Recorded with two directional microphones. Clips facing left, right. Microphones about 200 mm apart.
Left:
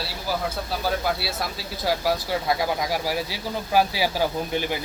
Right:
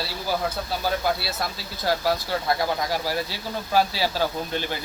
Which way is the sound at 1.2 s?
10° left (ahead or behind).